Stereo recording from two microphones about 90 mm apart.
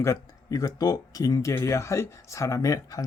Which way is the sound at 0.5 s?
45° left (ahead or behind).